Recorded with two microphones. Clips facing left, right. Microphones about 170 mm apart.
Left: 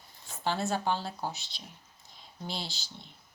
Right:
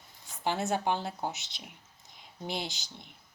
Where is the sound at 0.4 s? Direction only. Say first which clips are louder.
Right 1 dB; 20° right (ahead or behind).